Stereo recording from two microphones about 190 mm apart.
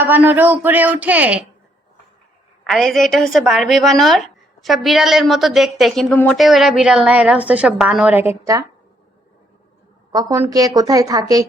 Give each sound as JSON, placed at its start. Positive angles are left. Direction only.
{"t": 0.0, "sound": "speech", "side_deg": -10}
{"t": 2.6, "sound": "a woman's voice", "side_deg": 0}
{"t": 10.1, "sound": "a woman's voice", "side_deg": -20}